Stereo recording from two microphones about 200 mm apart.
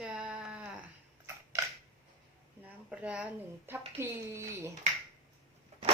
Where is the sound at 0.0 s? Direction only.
5° right (ahead or behind).